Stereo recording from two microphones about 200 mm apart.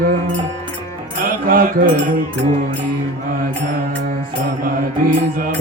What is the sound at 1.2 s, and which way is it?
Music, 45° right (ahead or behind).